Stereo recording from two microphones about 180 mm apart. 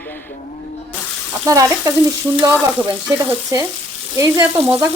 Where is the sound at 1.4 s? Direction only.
20° right (ahead or behind).